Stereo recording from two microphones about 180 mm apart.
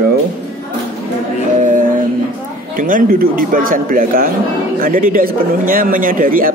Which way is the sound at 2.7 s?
50° right (ahead or behind).